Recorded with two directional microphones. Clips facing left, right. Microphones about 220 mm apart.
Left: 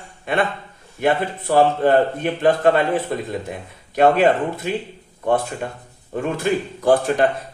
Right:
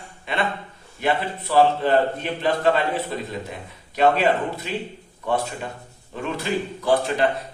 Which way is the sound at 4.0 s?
50° left (ahead or behind).